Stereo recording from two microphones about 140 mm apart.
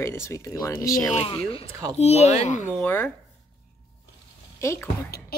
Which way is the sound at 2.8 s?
15° left (ahead or behind).